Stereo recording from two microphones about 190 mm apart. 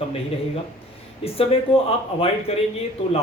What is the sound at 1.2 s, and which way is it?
Speech, 30° left (ahead or behind).